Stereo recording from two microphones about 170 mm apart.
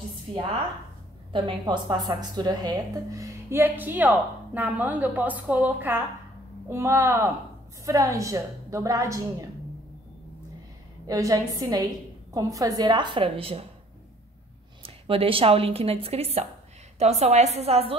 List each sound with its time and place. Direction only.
1.3 s a woman's voice: 30° right (ahead or behind)
11.1 s speech: 20° right (ahead or behind)
14.8 s a woman's voice: 35° right (ahead or behind)